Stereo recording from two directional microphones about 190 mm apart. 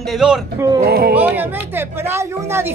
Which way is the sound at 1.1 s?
10° right (ahead or behind).